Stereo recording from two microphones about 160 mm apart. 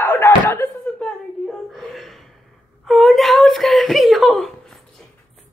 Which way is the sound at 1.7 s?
Centre (ahead or behind).